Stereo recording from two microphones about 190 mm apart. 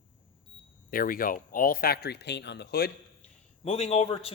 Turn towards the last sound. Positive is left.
turn(degrees=30)  # may be behind; listen again after turning